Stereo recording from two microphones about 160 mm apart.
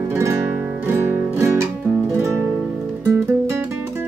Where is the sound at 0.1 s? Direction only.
15° right (ahead or behind).